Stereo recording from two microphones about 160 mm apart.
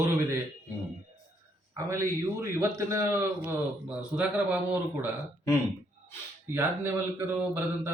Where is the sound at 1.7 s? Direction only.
20° right (ahead or behind).